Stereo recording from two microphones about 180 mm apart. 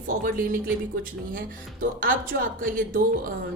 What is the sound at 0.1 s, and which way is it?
Speech, 50° right (ahead or behind).